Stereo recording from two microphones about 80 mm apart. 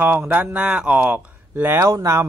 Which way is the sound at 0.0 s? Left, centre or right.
Right.